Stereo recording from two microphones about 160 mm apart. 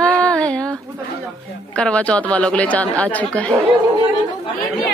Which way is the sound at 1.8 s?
5° left (ahead or behind).